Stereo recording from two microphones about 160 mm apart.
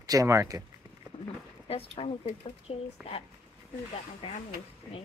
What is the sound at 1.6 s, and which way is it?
Speech, 35° left (ahead or behind).